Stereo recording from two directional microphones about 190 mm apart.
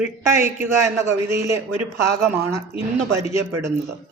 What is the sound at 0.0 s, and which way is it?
Speech, 15° right (ahead or behind).